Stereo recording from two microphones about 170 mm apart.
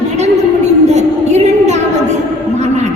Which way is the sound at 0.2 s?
40° right (ahead or behind).